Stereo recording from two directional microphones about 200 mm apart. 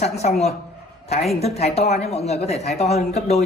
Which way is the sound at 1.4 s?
30° left (ahead or behind).